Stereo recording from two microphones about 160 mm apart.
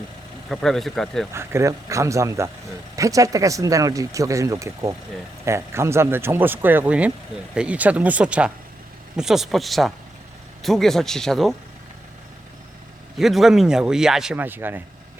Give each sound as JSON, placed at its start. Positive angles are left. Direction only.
{"t": 0.5, "sound": "speech", "side_deg": 0}
{"t": 1.3, "sound": "speech", "side_deg": -15}
{"t": 13.1, "sound": "speech", "side_deg": 0}